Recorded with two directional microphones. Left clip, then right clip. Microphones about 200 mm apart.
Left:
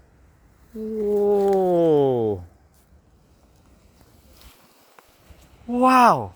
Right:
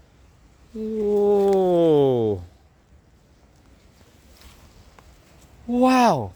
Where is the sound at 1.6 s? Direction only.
10° right (ahead or behind).